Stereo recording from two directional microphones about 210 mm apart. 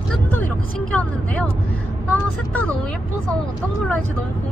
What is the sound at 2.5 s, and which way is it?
Speech, 5° left (ahead or behind).